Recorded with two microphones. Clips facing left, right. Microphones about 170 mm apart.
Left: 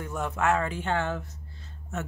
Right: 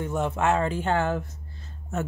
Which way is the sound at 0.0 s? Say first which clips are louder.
Right 3 dB; 25° right (ahead or behind).